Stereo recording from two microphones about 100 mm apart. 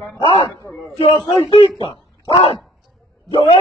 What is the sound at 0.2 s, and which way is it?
Speech, 55° left (ahead or behind).